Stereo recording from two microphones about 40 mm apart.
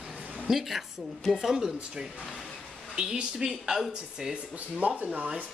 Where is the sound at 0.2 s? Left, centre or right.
Right.